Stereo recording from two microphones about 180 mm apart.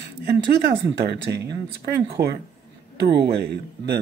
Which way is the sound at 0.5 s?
65° right (ahead or behind).